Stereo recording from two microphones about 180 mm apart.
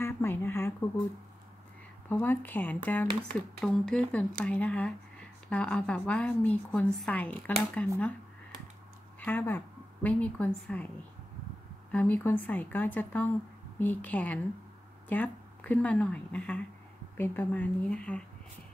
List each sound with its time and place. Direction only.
0.0 s a sound: 15° left (ahead or behind)
2.0 s a woman's voice: 10° left (ahead or behind)
9.2 s a woman's voice: 10° left (ahead or behind)
11.9 s a woman's voice: 10° left (ahead or behind)